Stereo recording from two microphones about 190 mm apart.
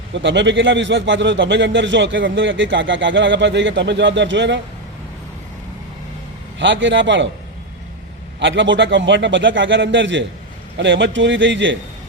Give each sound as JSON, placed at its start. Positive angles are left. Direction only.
{"t": 0.1, "sound": "a man's voice", "side_deg": -70}
{"t": 6.6, "sound": "a man's voice", "side_deg": -70}
{"t": 8.4, "sound": "a man's voice", "side_deg": -75}